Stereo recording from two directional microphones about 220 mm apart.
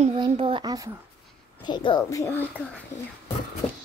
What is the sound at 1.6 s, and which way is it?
Speech, 20° left (ahead or behind).